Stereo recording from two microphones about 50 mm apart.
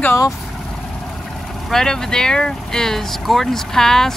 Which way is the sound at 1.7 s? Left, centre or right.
Centre.